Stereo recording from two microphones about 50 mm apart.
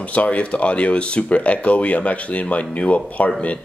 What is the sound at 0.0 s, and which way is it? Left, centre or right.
Speech, left.